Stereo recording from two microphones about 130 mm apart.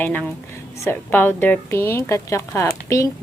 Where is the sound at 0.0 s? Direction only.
15° left (ahead or behind).